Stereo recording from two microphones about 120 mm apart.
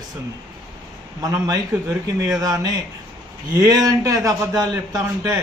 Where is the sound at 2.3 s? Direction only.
30° right (ahead or behind).